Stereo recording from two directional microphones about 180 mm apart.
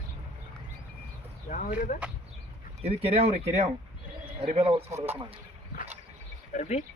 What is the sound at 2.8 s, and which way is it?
Speech, 35° right (ahead or behind).